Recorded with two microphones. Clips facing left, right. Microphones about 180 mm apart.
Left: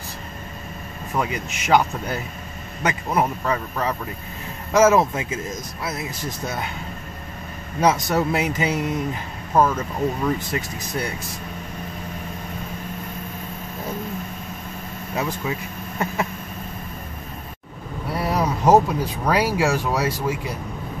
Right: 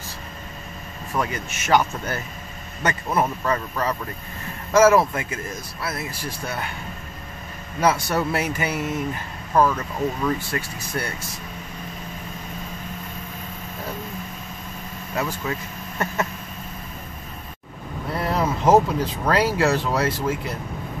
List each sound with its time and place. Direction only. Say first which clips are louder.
1.1 s speech: left 1 dB; 15° left (ahead or behind)
7.8 s speech: left 2 dB; 15° left (ahead or behind)
15.1 s speech: left 1 dB; 15° left (ahead or behind)
18.1 s speech: left 1 dB; 10° left (ahead or behind)